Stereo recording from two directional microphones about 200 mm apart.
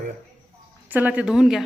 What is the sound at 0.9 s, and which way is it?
Speech, 10° right (ahead or behind).